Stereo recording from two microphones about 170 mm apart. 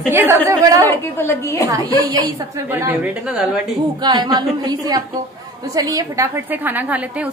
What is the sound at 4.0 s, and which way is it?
A woman's voice, 25° right (ahead or behind).